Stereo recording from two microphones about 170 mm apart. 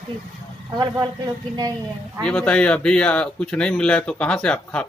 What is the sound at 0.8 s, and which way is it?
Speech, 25° right (ahead or behind).